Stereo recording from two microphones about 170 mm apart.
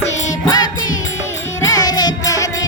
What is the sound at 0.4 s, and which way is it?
Music, 20° left (ahead or behind).